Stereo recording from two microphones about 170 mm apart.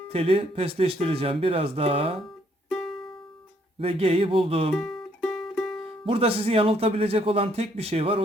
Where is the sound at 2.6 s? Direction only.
Centre (ahead or behind).